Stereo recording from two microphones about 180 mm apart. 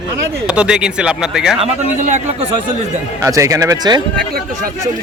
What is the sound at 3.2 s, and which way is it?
Speech, 15° right (ahead or behind).